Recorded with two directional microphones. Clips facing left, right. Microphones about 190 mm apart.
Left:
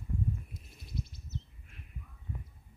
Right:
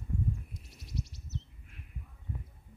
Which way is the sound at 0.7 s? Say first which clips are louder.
Right 1 dB; 80° right.